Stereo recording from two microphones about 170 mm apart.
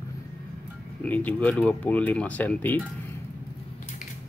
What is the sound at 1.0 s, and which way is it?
Speech, 10° left (ahead or behind).